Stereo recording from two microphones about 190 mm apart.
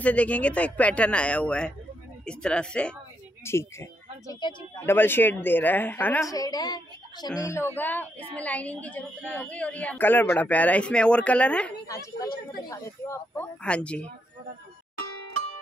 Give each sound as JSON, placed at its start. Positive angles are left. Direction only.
{"t": 0.0, "sound": "a woman's voice", "side_deg": 5}
{"t": 4.8, "sound": "a woman's voice", "side_deg": 10}
{"t": 11.9, "sound": "a woman's voice", "side_deg": 20}